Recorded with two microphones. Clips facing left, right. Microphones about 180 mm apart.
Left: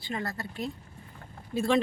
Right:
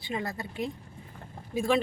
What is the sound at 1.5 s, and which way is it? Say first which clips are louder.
Speech: left 1 dB; 10° right (ahead or behind).